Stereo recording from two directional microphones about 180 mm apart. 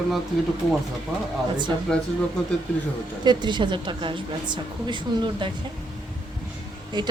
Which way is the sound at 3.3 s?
25° right (ahead or behind).